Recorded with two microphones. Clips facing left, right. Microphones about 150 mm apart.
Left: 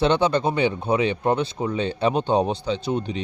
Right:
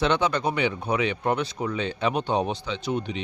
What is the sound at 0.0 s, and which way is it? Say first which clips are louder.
Speech: left 4 dB; 30° left (ahead or behind).